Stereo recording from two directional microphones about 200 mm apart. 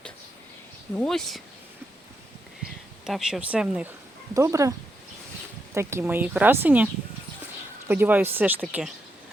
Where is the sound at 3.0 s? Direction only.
Centre (ahead or behind).